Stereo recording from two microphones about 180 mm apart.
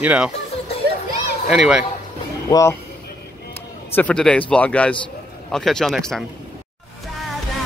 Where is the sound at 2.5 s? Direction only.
15° left (ahead or behind).